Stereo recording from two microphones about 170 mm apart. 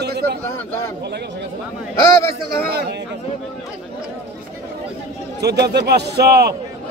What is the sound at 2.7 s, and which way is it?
Speech, 75° right (ahead or behind).